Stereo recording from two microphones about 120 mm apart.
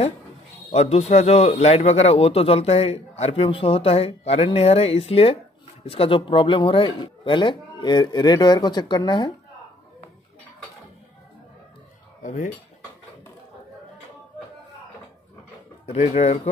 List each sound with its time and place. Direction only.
0.7 s a man's voice: 65° left (ahead or behind); by 9.3 s 40° left (ahead or behind)
12.2 s cutlery: 90° left
15.8 s a man's voice: 60° left (ahead or behind)